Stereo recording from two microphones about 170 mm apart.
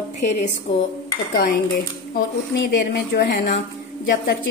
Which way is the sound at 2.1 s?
65° left (ahead or behind).